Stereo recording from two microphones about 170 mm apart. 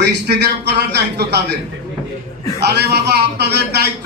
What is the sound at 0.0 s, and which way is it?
A man's voice, 80° right.